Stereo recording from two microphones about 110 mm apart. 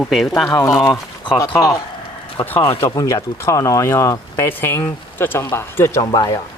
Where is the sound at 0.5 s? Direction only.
30° left (ahead or behind).